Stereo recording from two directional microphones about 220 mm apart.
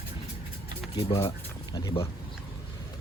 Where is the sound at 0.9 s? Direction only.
15° left (ahead or behind).